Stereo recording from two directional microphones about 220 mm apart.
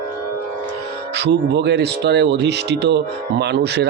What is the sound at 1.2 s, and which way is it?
Speech, 50° right (ahead or behind).